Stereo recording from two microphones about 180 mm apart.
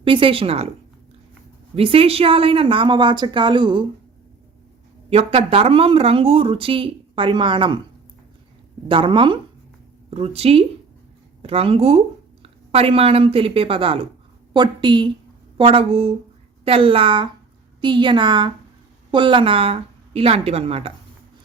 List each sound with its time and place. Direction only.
0.0 s a woman's voice: 30° right (ahead or behind)
1.7 s a woman's voice: 30° right (ahead or behind)
5.0 s speech: 30° right (ahead or behind)
8.9 s a woman's voice: 30° right (ahead or behind)